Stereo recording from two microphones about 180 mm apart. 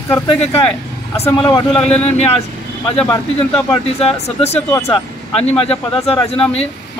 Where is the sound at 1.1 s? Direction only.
35° left (ahead or behind).